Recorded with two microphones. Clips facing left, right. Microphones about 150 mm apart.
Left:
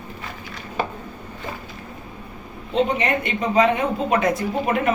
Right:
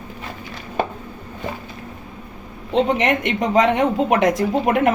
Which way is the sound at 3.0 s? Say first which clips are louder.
Right 3 dB; 90° right.